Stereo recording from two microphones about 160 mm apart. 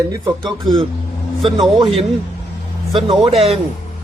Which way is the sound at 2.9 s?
35° right (ahead or behind).